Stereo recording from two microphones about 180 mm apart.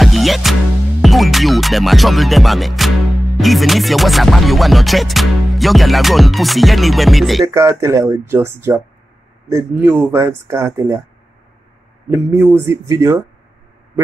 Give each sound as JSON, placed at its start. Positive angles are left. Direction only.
{"t": 0.0, "sound": "music", "side_deg": 0}
{"t": 7.4, "sound": "speech", "side_deg": -15}
{"t": 12.1, "sound": "speech", "side_deg": -15}